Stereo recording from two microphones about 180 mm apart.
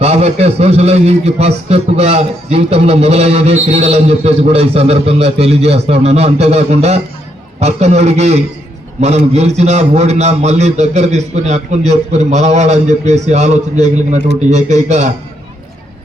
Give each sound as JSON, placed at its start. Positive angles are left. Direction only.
{"t": 0.0, "sound": "a man's voice", "side_deg": -35}